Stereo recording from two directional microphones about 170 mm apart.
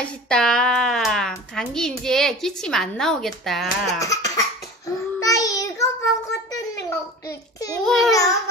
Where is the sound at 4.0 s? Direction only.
20° left (ahead or behind).